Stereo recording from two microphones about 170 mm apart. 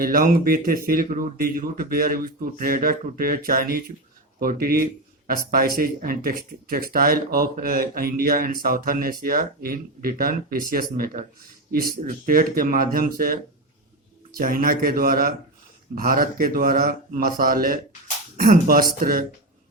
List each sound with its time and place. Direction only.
0.0 s a man's voice: 55° right (ahead or behind)